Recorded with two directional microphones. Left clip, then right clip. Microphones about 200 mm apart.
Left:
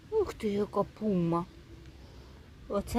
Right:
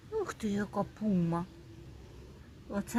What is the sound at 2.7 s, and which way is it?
Speech, 20° left (ahead or behind).